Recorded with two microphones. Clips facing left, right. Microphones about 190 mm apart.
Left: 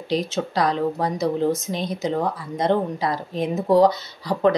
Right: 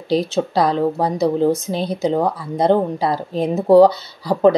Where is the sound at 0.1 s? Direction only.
30° right (ahead or behind).